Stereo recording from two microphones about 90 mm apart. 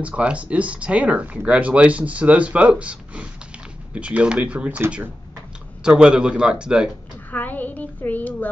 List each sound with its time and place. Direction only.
0.0 s speech: 15° right (ahead or behind)
5.9 s speech: 10° right (ahead or behind)
7.2 s speech: 20° left (ahead or behind)